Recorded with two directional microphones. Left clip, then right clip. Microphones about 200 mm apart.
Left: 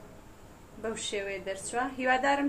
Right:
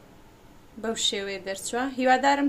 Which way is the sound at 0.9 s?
60° right (ahead or behind).